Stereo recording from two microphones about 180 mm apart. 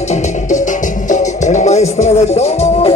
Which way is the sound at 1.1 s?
40° left (ahead or behind).